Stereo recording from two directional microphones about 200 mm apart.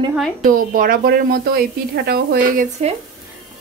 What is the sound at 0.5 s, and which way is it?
Speech, 45° right (ahead or behind).